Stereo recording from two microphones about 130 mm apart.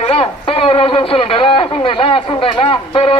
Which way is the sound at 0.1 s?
45° left (ahead or behind).